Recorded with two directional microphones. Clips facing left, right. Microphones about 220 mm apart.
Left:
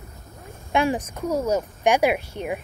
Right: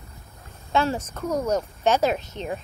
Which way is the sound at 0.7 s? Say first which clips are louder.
Left 2 dB; 15° left (ahead or behind).